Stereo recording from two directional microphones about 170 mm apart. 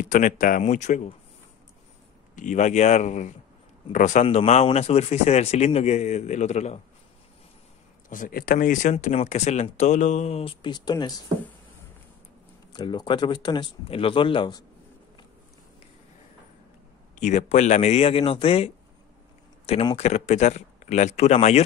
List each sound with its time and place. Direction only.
0.1 s speech: 50° left (ahead or behind)
2.3 s a man's voice: 45° left (ahead or behind)
8.1 s speech: 55° left (ahead or behind); by 11.1 s 25° left (ahead or behind)
12.7 s speech: 25° left (ahead or behind)
17.1 s a man's voice: 45° left (ahead or behind)